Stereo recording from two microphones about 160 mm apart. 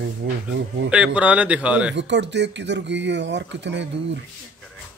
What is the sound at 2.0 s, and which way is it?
Speech, 90° right.